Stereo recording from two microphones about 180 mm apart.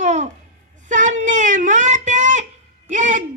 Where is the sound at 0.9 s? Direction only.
45° right (ahead or behind).